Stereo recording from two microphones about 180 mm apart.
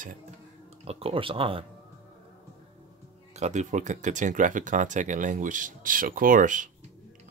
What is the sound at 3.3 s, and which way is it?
Speech, 40° right (ahead or behind).